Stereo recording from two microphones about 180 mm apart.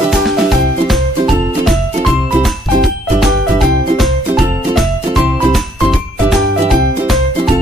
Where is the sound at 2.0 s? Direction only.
Centre (ahead or behind).